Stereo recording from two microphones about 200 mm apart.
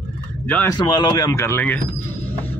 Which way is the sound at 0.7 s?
20° left (ahead or behind).